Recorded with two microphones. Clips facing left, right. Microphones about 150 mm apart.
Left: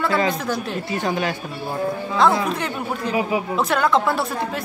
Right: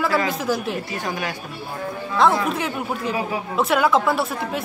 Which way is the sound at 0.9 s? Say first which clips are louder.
Left 4 dB; 25° left (ahead or behind).